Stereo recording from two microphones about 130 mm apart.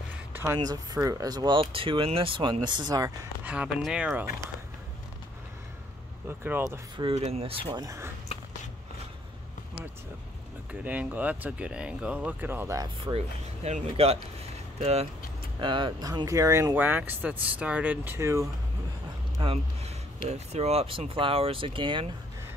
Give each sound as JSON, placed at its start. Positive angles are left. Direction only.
{"t": 0.3, "sound": "a sound", "side_deg": -20}
{"t": 0.6, "sound": "speech", "side_deg": -30}
{"t": 3.4, "sound": "speech", "side_deg": -5}
{"t": 6.2, "sound": "speech", "side_deg": -15}
{"t": 7.0, "sound": "speech", "side_deg": -50}
{"t": 7.8, "sound": "speech", "side_deg": -25}
{"t": 8.3, "sound": "biting", "side_deg": 45}
{"t": 10.7, "sound": "speech", "side_deg": -10}
{"t": 13.0, "sound": "speech", "side_deg": -50}
{"t": 15.6, "sound": "speech", "side_deg": -40}
{"t": 19.4, "sound": "speech", "side_deg": -45}